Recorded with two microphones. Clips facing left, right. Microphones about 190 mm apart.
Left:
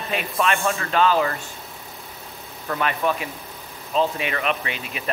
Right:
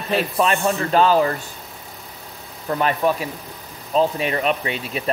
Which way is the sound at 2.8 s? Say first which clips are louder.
Right 4 dB; 35° right (ahead or behind).